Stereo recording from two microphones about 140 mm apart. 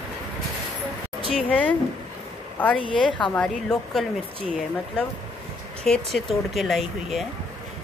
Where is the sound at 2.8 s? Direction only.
35° left (ahead or behind).